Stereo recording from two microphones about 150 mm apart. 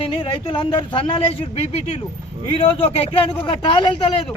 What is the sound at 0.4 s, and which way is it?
Speech, 35° left (ahead or behind).